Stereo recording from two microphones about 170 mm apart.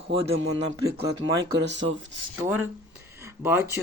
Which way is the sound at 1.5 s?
90° right.